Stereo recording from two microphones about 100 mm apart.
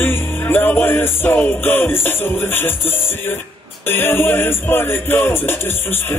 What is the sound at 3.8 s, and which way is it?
Music, 20° left (ahead or behind).